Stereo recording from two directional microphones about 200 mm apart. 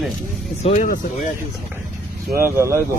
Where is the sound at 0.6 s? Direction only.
35° left (ahead or behind).